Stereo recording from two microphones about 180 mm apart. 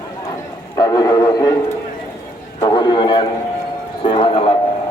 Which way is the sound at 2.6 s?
25° left (ahead or behind).